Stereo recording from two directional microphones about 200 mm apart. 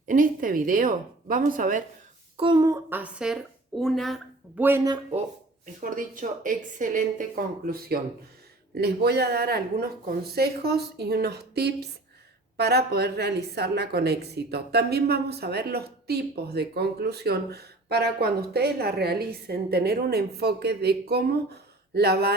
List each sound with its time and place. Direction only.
0.1 s a woman's voice: 45° right (ahead or behind)
2.4 s speech: 20° right (ahead or behind)
2.9 s a woman's voice: 5° right (ahead or behind)
4.6 s speech: 15° right (ahead or behind)
5.8 s a woman's voice: 40° right (ahead or behind)